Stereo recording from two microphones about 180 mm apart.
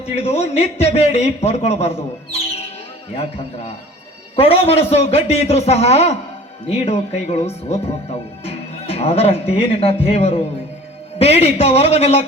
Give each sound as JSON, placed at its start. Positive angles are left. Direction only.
{"t": 0.0, "sound": "speech", "side_deg": 35}